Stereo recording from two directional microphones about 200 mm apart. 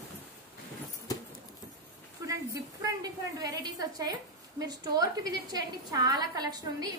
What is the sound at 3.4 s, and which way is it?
A woman's voice, 20° right (ahead or behind).